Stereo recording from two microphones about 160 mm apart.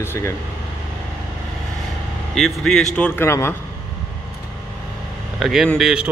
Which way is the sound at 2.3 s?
Centre (ahead or behind).